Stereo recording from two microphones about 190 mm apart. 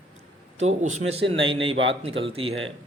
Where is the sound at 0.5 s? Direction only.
35° right (ahead or behind).